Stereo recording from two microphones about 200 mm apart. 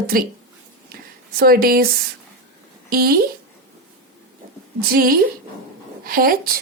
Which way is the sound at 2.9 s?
50° right (ahead or behind).